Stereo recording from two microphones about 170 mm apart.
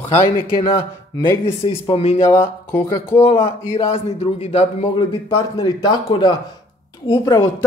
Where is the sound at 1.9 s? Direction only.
35° left (ahead or behind).